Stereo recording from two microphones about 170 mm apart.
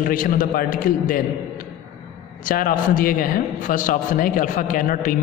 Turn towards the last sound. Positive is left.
turn(degrees=50)  # may be behind; listen again after turning